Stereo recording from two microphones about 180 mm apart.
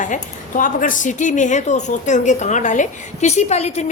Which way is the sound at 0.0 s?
45° left (ahead or behind).